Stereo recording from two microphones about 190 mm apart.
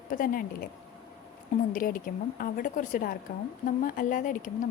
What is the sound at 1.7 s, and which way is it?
A woman's voice, 45° left (ahead or behind).